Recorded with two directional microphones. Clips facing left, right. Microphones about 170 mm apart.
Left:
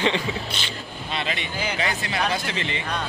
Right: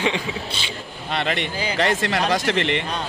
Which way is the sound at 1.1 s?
65° right (ahead or behind).